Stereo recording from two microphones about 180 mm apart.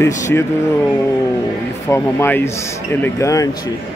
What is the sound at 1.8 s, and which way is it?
A man's voice, 15° left (ahead or behind).